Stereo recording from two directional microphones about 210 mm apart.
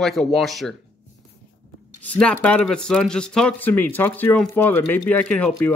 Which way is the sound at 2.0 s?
5° left (ahead or behind).